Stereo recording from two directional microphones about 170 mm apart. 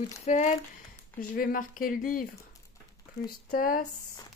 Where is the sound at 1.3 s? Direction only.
60° left (ahead or behind).